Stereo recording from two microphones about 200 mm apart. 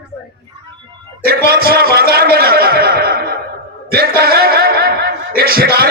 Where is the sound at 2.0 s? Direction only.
50° right (ahead or behind).